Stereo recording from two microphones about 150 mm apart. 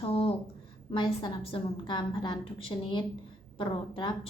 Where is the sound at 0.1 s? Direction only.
40° left (ahead or behind).